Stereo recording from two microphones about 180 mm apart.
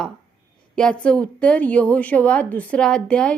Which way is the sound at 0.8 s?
5° left (ahead or behind).